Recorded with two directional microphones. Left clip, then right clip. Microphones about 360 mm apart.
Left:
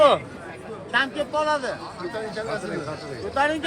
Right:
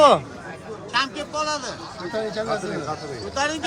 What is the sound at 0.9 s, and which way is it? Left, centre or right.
Speech, centre.